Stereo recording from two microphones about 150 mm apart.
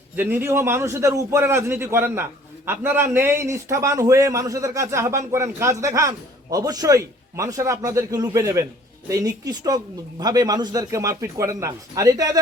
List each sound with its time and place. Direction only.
0.2 s a man's voice: 15° right (ahead or behind)